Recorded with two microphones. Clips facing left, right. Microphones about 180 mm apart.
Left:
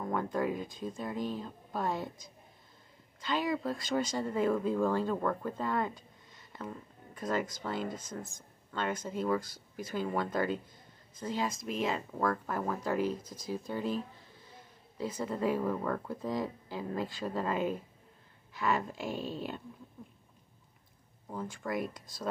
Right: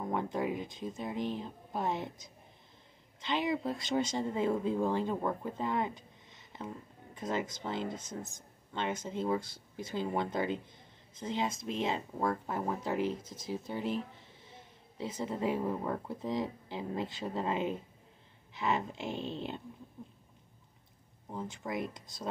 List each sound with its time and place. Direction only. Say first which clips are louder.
0.0 s speech: left 1 dB; 20° right (ahead or behind)
3.2 s speech: even; 20° right (ahead or behind)
21.3 s speech: left 2 dB; 20° right (ahead or behind)